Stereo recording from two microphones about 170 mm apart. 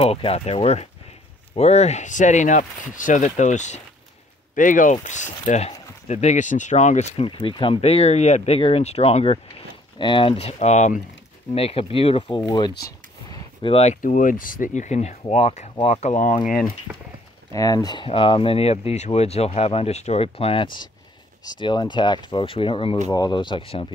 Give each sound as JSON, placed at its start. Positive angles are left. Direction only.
{"t": 0.0, "sound": "speech", "side_deg": 35}
{"t": 12.4, "sound": "speech", "side_deg": 20}
{"t": 12.8, "sound": "a sound", "side_deg": 25}
{"t": 14.0, "sound": "speech", "side_deg": 50}
{"t": 17.5, "sound": "speech", "side_deg": 20}